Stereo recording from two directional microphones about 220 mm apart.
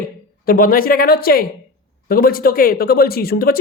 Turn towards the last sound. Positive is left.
turn(degrees=45)  # may be behind; listen again after turning